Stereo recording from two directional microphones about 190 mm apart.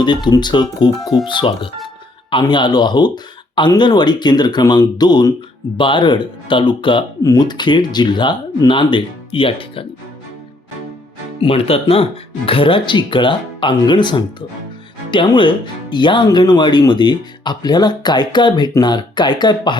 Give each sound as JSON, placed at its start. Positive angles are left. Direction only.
{"t": 0.0, "sound": "speech", "side_deg": 25}
{"t": 11.3, "sound": "speech", "side_deg": 30}